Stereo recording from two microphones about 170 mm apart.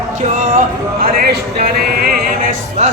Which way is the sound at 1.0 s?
60° right (ahead or behind).